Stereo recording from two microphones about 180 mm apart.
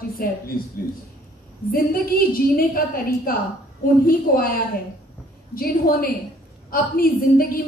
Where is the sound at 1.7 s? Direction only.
55° left (ahead or behind).